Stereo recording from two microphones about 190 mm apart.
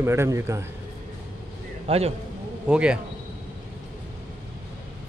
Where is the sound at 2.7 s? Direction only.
5° right (ahead or behind).